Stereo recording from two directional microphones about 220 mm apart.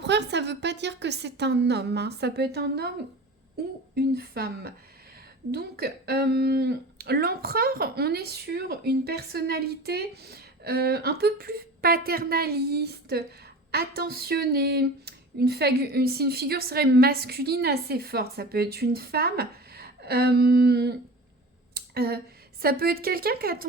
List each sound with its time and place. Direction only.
0.0 s a woman's voice: 50° right (ahead or behind)
3.9 s speech: 45° right (ahead or behind)
21.8 s a sound: 45° right (ahead or behind)
22.6 s speech: 45° right (ahead or behind)